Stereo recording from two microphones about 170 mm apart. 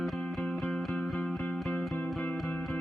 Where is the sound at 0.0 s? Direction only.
Centre (ahead or behind).